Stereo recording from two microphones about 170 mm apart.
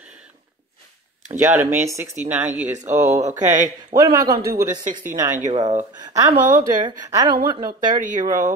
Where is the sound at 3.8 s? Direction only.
25° right (ahead or behind).